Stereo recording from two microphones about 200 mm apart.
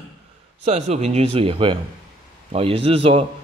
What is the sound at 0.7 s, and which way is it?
Speech, 35° right (ahead or behind).